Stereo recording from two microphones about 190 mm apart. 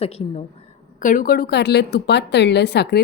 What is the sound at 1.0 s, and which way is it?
A woman's voice, 45° left (ahead or behind).